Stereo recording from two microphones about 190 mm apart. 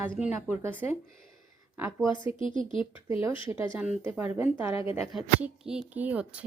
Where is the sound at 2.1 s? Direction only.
25° left (ahead or behind).